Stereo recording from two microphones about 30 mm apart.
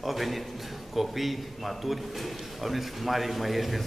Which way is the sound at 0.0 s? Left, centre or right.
Centre.